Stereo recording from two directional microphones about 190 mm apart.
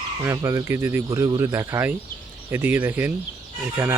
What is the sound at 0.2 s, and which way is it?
Speech, 15° right (ahead or behind).